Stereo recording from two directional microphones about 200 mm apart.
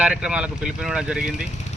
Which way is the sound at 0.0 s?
5° right (ahead or behind).